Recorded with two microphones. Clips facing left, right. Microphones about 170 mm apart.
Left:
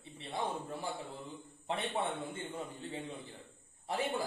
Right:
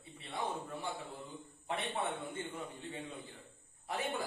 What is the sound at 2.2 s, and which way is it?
Speech, 30° left (ahead or behind).